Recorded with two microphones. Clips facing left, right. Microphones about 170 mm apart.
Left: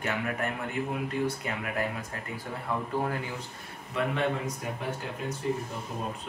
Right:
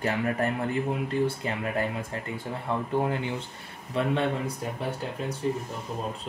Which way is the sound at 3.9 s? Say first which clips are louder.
Right 3 dB; 30° right (ahead or behind).